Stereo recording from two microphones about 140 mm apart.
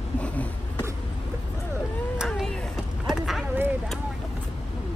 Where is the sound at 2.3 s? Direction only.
5° left (ahead or behind).